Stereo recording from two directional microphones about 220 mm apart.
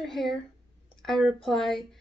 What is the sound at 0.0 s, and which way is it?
A woman's voice, centre (ahead or behind).